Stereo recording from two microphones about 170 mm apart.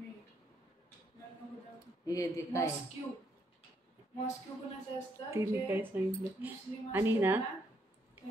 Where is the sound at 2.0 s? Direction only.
20° left (ahead or behind).